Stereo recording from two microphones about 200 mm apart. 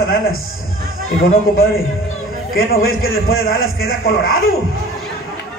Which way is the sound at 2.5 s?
50° left (ahead or behind).